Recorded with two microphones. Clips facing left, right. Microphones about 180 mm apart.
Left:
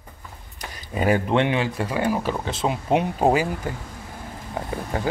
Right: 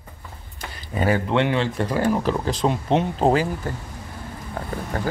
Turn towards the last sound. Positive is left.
turn(degrees=15)  # may be behind; listen again after turning